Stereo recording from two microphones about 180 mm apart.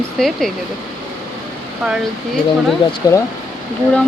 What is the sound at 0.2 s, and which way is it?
Speech, centre (ahead or behind).